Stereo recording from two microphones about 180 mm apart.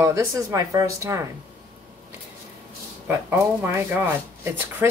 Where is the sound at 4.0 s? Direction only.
10° right (ahead or behind).